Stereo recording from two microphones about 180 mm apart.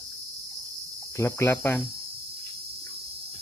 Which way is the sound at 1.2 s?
15° left (ahead or behind).